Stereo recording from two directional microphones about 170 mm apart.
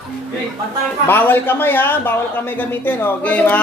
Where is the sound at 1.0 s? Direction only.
10° left (ahead or behind).